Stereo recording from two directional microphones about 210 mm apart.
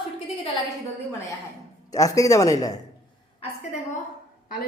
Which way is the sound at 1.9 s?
15° left (ahead or behind).